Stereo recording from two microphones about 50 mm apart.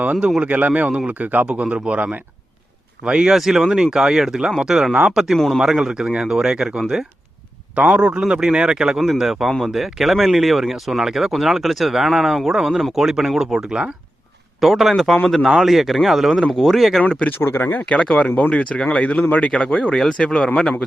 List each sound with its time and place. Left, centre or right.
0.0 s a man's voice: right
3.3 s speech: centre
7.9 s a man's voice: centre
17.4 s speech: left
17.9 s speech: left